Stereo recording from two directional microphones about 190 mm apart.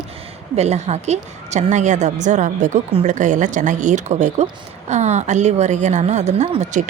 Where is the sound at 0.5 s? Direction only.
35° right (ahead or behind).